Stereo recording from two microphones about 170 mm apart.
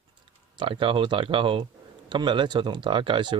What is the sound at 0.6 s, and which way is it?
Speech, 30° right (ahead or behind).